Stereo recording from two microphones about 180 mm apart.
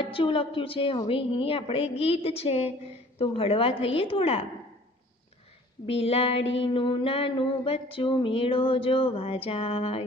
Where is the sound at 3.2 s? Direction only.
30° left (ahead or behind).